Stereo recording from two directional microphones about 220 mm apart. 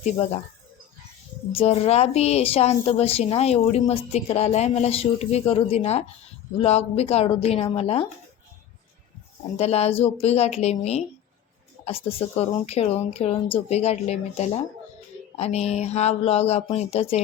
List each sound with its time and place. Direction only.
0.0 s speech: 30° left (ahead or behind)
1.5 s a woman's voice: 30° left (ahead or behind)
9.6 s a woman's voice: 30° left (ahead or behind)